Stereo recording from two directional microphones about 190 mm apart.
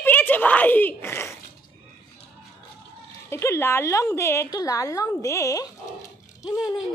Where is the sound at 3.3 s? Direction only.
15° left (ahead or behind).